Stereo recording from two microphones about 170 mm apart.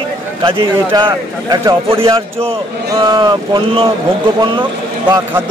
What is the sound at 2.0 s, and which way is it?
A man's voice, 35° right (ahead or behind).